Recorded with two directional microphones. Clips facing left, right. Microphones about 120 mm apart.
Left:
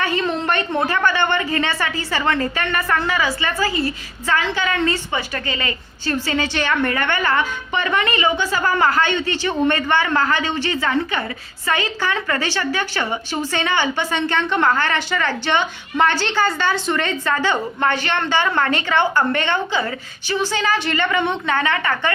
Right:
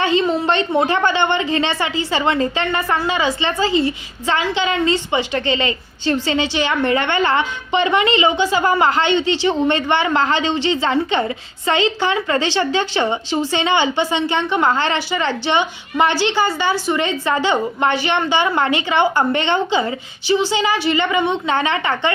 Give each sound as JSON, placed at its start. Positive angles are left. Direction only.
{"t": 0.0, "sound": "a man's voice", "side_deg": -20}